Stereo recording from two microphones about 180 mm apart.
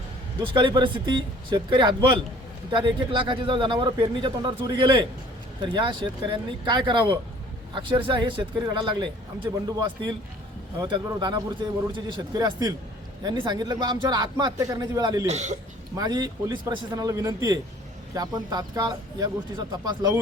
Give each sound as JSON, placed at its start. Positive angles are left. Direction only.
{"t": 0.5, "sound": "speech", "side_deg": -25}
{"t": 10.8, "sound": "speech", "side_deg": -25}
{"t": 15.3, "sound": "speech", "side_deg": -40}
{"t": 16.0, "sound": "speech", "side_deg": -20}